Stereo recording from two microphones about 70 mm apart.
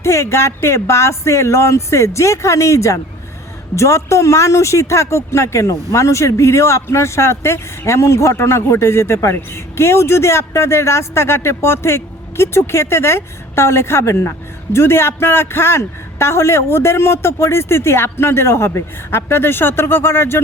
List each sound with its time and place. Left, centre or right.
0.0 s speech: left